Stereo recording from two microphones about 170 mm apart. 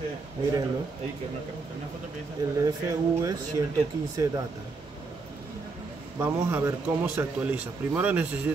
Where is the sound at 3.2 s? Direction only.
20° right (ahead or behind).